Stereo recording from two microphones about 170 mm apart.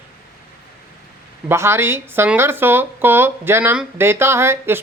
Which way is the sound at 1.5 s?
15° right (ahead or behind).